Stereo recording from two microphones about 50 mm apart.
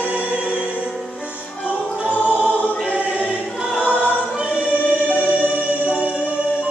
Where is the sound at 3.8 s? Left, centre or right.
Left.